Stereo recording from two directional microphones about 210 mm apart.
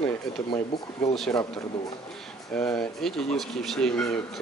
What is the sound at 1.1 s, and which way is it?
Speech, 5° left (ahead or behind).